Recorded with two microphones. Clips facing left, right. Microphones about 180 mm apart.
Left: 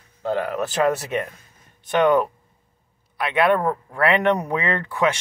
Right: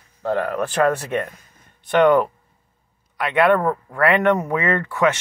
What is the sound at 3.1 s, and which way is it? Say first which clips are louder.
Speech: right 2 dB; 15° left (ahead or behind).